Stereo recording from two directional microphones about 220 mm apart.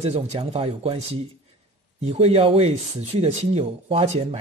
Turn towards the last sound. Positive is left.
turn(degrees=-25)  # may be behind; listen again after turning